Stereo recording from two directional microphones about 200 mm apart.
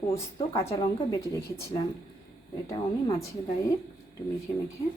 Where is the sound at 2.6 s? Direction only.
15° left (ahead or behind).